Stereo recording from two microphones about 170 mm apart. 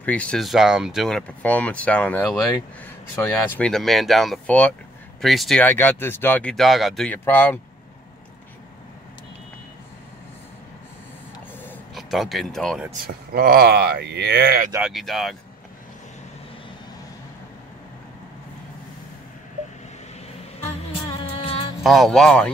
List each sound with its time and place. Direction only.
0.0 s speech: 10° left (ahead or behind)
3.4 s speech: 5° left (ahead or behind)
5.6 s speech: 10° left (ahead or behind)
7.2 s speech: 10° left (ahead or behind)
11.9 s speech: centre (ahead or behind)
13.0 s speech: 65° right (ahead or behind)
14.8 s speech: centre (ahead or behind)
21.5 s music: 35° left (ahead or behind)
21.8 s speech: centre (ahead or behind)